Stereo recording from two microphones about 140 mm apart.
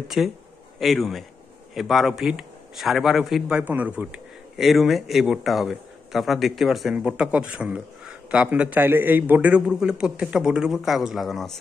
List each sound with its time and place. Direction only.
0.1 s a man's voice: 5° right (ahead or behind)